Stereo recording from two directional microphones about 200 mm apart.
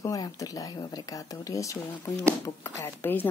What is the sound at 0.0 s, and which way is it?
Speech, 15° left (ahead or behind).